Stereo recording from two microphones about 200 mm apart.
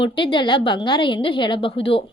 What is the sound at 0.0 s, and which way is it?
Speech, 25° left (ahead or behind).